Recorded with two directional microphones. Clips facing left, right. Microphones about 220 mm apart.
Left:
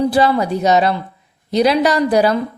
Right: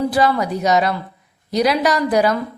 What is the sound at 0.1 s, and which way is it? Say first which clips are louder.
A woman's voice: left 3 dB; 30° left (ahead or behind).